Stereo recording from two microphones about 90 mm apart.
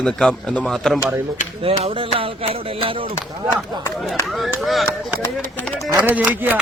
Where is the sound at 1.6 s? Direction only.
90° right.